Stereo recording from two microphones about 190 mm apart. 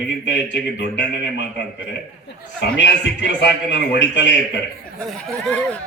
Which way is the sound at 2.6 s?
70° left (ahead or behind).